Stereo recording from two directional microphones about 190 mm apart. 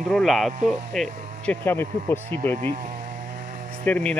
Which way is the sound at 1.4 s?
10° left (ahead or behind).